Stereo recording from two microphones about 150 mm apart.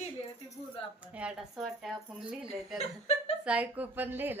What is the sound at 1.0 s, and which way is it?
Speech, 10° right (ahead or behind).